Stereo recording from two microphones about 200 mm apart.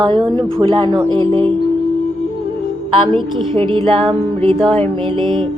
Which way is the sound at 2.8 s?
25° right (ahead or behind).